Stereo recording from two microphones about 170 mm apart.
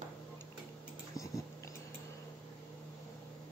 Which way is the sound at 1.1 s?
20° left (ahead or behind).